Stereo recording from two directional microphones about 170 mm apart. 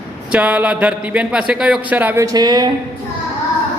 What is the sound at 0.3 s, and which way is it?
A man's voice, 5° right (ahead or behind).